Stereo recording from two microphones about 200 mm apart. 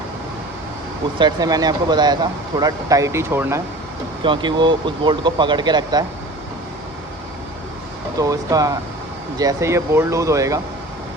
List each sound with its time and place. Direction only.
1.2 s speech: 20° right (ahead or behind)
4.2 s speech: 25° right (ahead or behind)
8.2 s speech: 15° right (ahead or behind)